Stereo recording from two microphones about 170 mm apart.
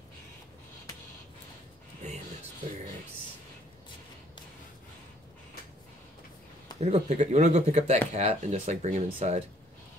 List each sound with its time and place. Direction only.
6.8 s speech: 40° right (ahead or behind)